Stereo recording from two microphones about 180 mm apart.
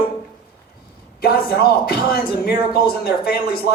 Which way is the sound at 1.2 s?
60° left (ahead or behind).